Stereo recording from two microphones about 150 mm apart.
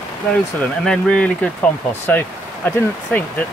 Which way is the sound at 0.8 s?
5° left (ahead or behind).